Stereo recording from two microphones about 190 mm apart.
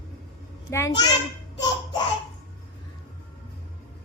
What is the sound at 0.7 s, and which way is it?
Speech, 15° left (ahead or behind).